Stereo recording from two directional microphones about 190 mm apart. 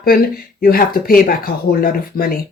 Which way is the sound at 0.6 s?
50° left (ahead or behind).